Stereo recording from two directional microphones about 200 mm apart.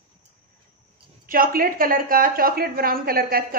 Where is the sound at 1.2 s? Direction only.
45° right (ahead or behind).